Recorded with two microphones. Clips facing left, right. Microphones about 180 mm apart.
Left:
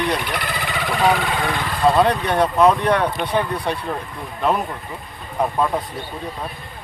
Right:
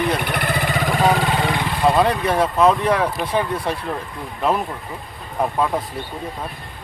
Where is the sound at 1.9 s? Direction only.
5° right (ahead or behind).